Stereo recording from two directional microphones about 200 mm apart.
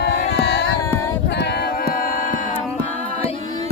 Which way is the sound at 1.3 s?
55° left (ahead or behind).